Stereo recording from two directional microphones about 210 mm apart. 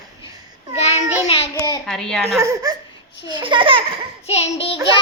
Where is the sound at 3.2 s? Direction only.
25° right (ahead or behind).